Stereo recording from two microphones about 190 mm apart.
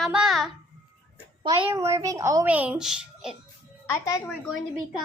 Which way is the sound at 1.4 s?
25° right (ahead or behind).